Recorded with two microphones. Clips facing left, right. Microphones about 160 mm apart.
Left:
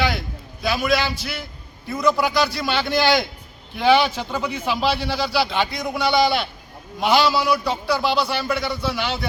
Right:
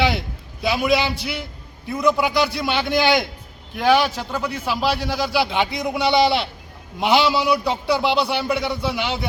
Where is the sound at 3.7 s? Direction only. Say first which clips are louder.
Even; 5° right (ahead or behind).